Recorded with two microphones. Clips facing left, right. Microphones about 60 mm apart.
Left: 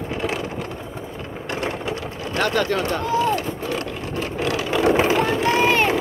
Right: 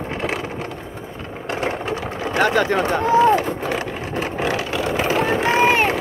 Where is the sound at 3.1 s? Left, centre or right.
Right.